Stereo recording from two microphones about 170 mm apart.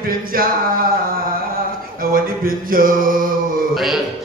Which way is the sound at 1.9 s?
55° right (ahead or behind).